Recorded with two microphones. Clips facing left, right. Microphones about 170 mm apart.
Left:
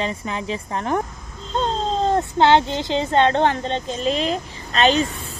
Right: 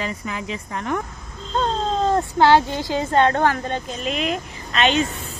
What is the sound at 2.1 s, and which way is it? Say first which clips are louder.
Speech: even; 20° left (ahead or behind).